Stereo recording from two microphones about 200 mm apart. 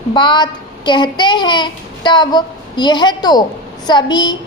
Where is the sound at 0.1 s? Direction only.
20° left (ahead or behind).